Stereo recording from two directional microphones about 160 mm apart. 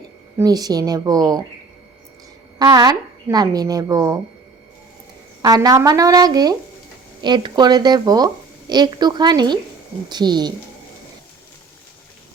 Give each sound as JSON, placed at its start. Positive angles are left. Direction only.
{"t": 0.3, "sound": "speech", "side_deg": -25}
{"t": 2.6, "sound": "speech", "side_deg": -25}
{"t": 5.4, "sound": "speech", "side_deg": -25}